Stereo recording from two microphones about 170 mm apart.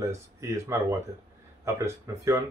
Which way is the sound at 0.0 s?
15° right (ahead or behind).